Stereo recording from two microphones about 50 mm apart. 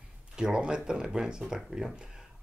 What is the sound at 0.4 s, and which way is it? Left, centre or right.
Speech, centre.